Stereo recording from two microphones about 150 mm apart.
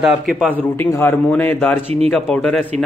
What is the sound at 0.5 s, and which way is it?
A man's voice, 15° left (ahead or behind).